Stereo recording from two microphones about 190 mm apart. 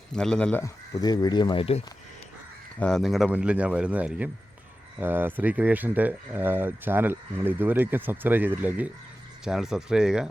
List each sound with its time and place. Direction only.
0.1 s speech: 5° left (ahead or behind)
0.6 s speech: 20° left (ahead or behind)
2.7 s speech: 5° left (ahead or behind)